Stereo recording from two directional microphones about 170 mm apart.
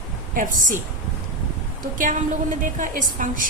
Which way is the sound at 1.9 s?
50° right (ahead or behind).